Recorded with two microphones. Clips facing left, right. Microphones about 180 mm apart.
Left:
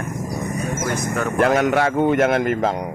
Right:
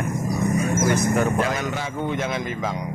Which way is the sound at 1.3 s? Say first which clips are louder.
Left 8 dB; 60° left (ahead or behind).